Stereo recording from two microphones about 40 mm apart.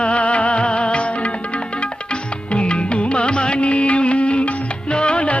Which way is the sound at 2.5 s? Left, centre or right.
Left.